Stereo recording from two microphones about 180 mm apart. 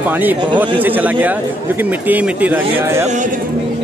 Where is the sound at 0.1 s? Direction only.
10° right (ahead or behind).